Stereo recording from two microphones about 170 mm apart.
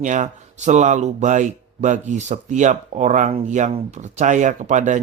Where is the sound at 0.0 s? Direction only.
45° right (ahead or behind).